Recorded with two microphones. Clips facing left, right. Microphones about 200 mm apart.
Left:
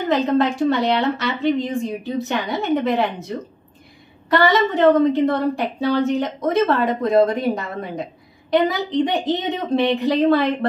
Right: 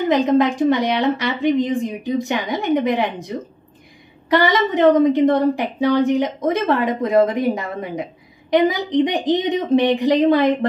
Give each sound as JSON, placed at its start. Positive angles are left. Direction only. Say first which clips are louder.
{"t": 0.0, "sound": "a woman's voice", "louder": "right 2 dB", "side_deg": -15}